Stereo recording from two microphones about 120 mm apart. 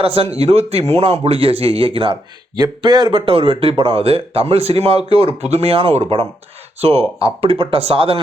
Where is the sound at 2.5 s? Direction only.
35° right (ahead or behind).